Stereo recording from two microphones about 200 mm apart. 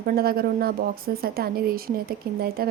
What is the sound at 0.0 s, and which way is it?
A woman's voice, 50° right (ahead or behind).